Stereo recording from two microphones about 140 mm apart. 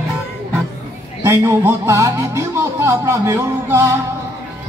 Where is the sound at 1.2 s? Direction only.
20° right (ahead or behind).